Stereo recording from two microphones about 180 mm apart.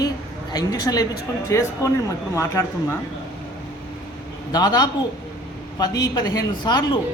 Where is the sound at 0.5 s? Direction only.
20° left (ahead or behind).